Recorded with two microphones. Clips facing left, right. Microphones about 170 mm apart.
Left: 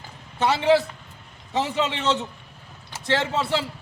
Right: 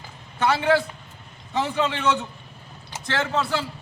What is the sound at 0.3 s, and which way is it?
A man's voice, 25° left (ahead or behind).